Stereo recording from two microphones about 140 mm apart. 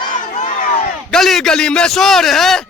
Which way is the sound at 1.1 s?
Centre (ahead or behind).